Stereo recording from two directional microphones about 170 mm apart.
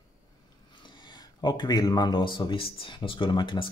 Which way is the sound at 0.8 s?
25° left (ahead or behind).